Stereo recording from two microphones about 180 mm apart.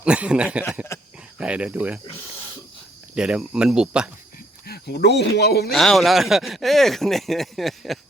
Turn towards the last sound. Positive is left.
turn(degrees=0)  # may be behind; listen again after turning